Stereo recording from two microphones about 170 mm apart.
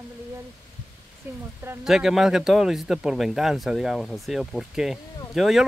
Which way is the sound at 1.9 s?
5° right (ahead or behind).